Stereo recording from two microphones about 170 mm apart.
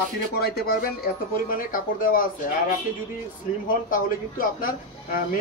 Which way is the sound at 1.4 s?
55° left (ahead or behind).